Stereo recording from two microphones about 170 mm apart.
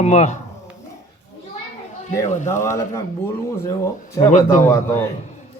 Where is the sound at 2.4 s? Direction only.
15° left (ahead or behind).